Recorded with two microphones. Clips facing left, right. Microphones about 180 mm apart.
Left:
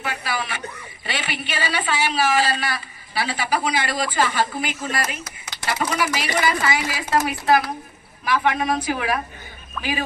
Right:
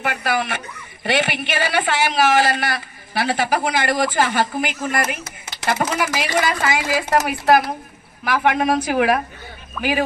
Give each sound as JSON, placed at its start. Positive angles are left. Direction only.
{"t": 0.0, "sound": "a woman's voice", "side_deg": -55}
{"t": 9.8, "sound": "speech", "side_deg": -5}